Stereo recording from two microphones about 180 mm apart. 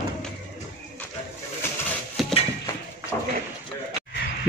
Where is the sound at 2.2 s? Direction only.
Centre (ahead or behind).